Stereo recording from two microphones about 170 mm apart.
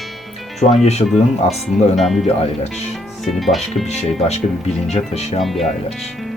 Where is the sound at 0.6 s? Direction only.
40° left (ahead or behind).